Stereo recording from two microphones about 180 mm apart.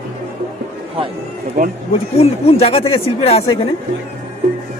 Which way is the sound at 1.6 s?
55° right (ahead or behind).